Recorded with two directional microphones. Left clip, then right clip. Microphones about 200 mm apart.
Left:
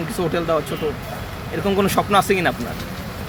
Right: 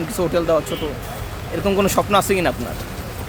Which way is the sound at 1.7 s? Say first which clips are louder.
Right 1 dB; 20° right (ahead or behind).